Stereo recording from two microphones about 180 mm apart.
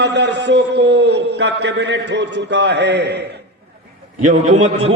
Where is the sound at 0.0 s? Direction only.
75° right (ahead or behind).